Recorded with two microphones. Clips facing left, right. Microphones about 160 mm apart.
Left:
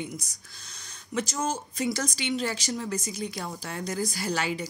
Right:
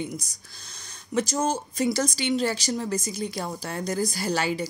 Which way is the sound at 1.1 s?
35° right (ahead or behind).